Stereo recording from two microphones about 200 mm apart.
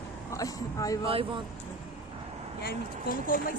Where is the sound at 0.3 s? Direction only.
15° left (ahead or behind).